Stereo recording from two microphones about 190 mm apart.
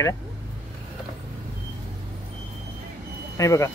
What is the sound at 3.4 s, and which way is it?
Speech, 15° left (ahead or behind).